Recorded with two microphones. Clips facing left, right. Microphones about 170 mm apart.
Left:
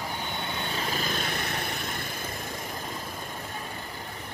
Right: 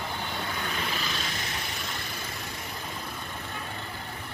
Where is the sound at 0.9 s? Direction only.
50° left (ahead or behind).